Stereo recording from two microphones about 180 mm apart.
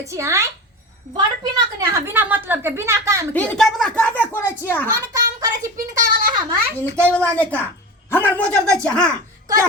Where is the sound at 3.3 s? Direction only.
5° left (ahead or behind).